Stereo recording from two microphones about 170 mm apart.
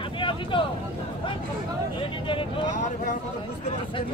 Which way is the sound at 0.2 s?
30° left (ahead or behind).